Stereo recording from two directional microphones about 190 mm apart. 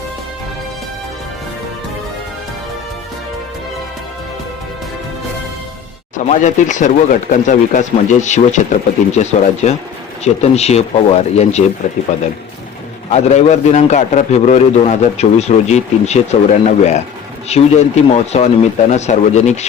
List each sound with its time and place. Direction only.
6.1 s a man's voice: 40° left (ahead or behind)
13.1 s a man's voice: 35° left (ahead or behind)